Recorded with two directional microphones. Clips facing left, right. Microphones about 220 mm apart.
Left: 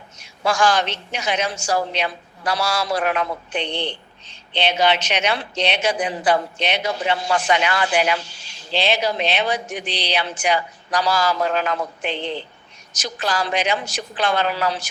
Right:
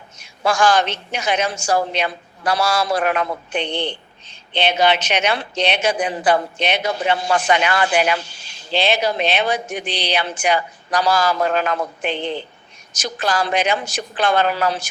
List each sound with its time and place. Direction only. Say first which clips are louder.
0.2 s a woman's voice: right 2 dB; 50° right (ahead or behind)